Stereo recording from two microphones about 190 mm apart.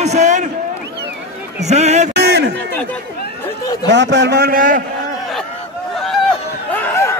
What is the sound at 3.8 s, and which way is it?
Speech, 70° right (ahead or behind).